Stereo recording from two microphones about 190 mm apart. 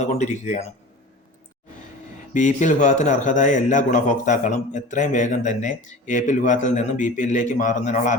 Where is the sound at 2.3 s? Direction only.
40° left (ahead or behind).